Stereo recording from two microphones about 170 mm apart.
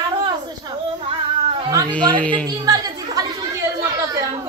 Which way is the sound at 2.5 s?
25° right (ahead or behind).